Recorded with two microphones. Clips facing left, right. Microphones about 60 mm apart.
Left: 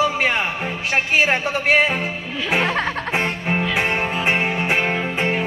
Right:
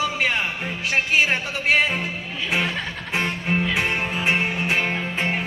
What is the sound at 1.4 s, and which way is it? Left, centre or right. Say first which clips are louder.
Speech: left 3 dB; left.